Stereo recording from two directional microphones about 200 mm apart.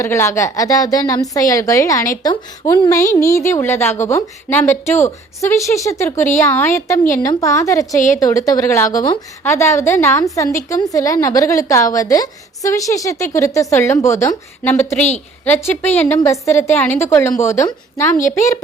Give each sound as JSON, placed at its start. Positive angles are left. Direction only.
{"t": 0.0, "sound": "a woman's voice", "side_deg": 15}